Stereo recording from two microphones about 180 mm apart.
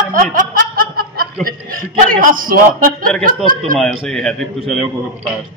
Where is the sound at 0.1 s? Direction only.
50° right (ahead or behind).